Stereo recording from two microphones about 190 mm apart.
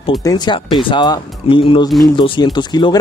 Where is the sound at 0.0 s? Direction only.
20° left (ahead or behind).